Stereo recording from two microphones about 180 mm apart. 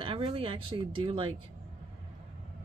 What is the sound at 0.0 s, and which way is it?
Speech, 30° right (ahead or behind).